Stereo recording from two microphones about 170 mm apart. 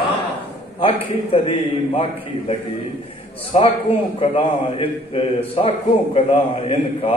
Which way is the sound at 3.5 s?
40° left (ahead or behind).